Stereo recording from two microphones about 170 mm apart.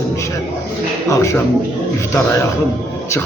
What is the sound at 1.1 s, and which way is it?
Speech, 15° left (ahead or behind).